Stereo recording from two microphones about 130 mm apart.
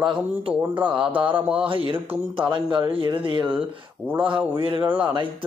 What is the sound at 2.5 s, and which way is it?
Speech, 40° right (ahead or behind).